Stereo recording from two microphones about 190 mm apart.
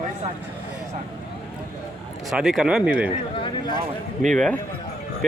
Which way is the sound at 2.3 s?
Centre (ahead or behind).